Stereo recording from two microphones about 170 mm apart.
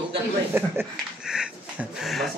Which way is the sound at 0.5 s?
15° right (ahead or behind).